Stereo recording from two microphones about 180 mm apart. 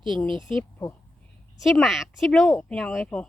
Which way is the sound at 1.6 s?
Centre (ahead or behind).